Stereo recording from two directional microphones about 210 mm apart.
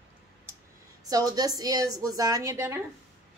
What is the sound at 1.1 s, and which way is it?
A woman's voice, 15° right (ahead or behind).